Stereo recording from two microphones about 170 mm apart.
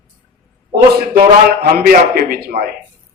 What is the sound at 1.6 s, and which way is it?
Speech, 65° right (ahead or behind).